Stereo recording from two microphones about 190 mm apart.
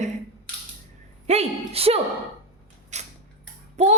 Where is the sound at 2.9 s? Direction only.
40° right (ahead or behind).